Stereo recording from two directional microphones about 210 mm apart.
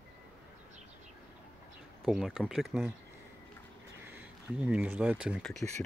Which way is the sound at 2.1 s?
Centre (ahead or behind).